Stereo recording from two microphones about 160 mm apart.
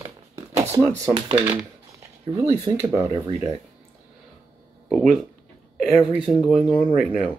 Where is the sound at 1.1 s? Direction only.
35° right (ahead or behind).